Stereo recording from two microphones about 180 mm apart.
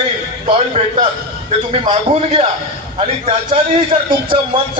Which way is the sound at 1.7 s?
35° right (ahead or behind).